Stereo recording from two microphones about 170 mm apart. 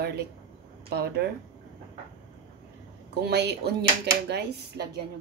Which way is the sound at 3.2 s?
75° right (ahead or behind).